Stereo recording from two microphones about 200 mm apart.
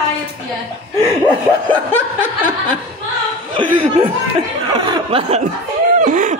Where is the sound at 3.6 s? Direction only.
25° right (ahead or behind).